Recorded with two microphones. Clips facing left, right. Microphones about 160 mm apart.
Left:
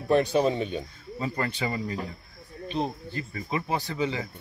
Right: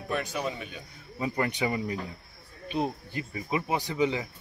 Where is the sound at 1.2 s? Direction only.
15° right (ahead or behind).